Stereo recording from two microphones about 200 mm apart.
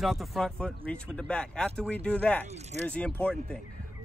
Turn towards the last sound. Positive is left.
turn(degrees=5)  # may be behind; listen again after turning